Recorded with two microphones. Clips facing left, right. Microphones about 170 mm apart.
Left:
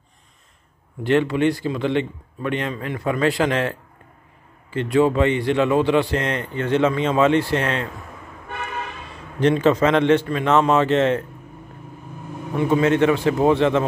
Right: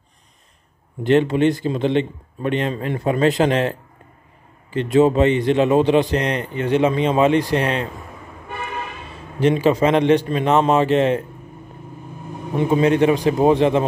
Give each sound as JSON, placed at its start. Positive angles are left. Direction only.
{"t": 1.0, "sound": "a man's voice", "side_deg": -20}
{"t": 9.4, "sound": "a man's voice", "side_deg": -10}
{"t": 12.5, "sound": "a man's voice", "side_deg": -20}